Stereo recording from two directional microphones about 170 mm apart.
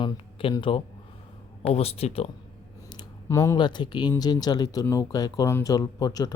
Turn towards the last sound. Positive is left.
turn(degrees=25)  # may be behind; listen again after turning